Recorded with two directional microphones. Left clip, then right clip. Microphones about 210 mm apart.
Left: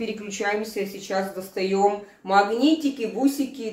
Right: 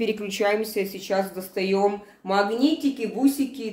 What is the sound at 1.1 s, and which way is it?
Speech, 25° right (ahead or behind).